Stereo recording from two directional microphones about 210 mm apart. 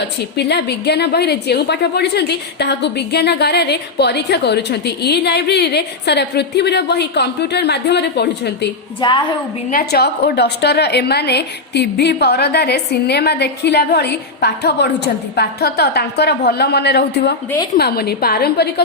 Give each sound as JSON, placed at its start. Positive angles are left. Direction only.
{"t": 0.3, "sound": "a woman's voice", "side_deg": 50}
{"t": 9.0, "sound": "a woman's voice", "side_deg": 20}
{"t": 9.6, "sound": "a woman's voice", "side_deg": 45}